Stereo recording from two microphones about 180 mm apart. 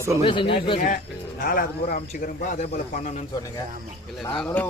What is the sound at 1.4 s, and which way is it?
A man's voice, 50° left (ahead or behind).